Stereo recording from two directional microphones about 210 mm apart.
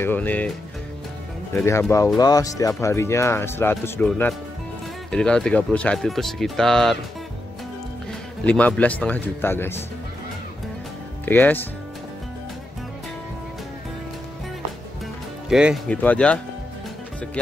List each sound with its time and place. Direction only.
0.0 s speech: 10° left (ahead or behind)
1.5 s speech: 15° left (ahead or behind)
8.5 s speech: 5° left (ahead or behind)
11.2 s speech: 10° left (ahead or behind)
15.4 s speech: centre (ahead or behind)